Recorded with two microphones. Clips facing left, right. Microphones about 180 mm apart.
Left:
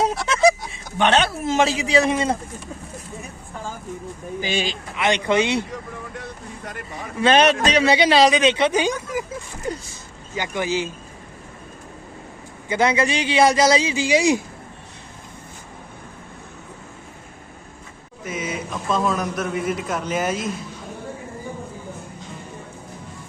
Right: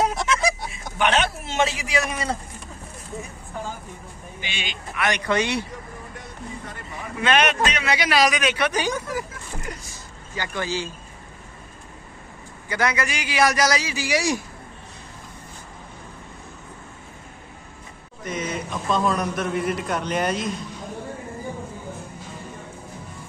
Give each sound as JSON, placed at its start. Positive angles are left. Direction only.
{"t": 0.9, "sound": "a man's voice", "side_deg": 30}
{"t": 4.4, "sound": "speech", "side_deg": 40}
{"t": 4.9, "sound": "a man's voice", "side_deg": 25}
{"t": 7.2, "sound": "a man's voice", "side_deg": 35}
{"t": 9.7, "sound": "a sound", "side_deg": 30}
{"t": 10.3, "sound": "a man's voice", "side_deg": 20}
{"t": 12.6, "sound": "a man's voice", "side_deg": 25}
{"t": 18.2, "sound": "a man's voice", "side_deg": 5}